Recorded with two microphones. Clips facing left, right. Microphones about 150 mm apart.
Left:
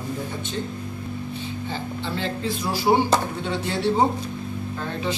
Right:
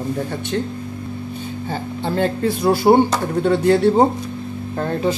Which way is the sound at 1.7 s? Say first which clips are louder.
Right 7 dB; 50° right (ahead or behind).